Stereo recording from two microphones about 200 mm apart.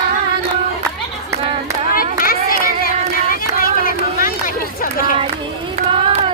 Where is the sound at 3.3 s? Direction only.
45° left (ahead or behind).